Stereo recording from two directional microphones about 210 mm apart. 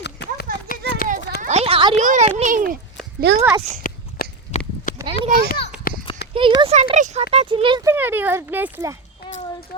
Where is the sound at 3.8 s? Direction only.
40° left (ahead or behind).